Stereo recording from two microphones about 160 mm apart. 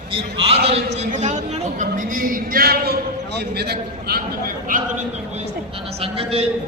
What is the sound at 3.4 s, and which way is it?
Speech, 90° right.